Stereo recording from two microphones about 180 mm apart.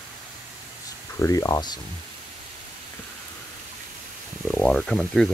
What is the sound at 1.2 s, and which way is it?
Speech, 20° left (ahead or behind).